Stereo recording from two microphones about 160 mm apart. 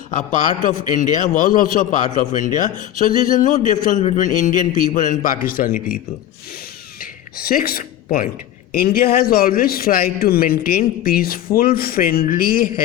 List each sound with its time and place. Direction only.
0.1 s a man's voice: 50° left (ahead or behind)
7.0 s speech: 65° left (ahead or behind)